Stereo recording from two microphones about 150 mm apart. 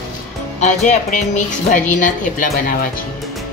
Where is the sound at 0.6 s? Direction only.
55° left (ahead or behind); by 3.0 s 70° left (ahead or behind).